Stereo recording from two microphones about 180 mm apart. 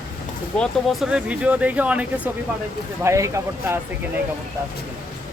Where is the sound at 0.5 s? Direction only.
Centre (ahead or behind); by 3.8 s 15° right (ahead or behind).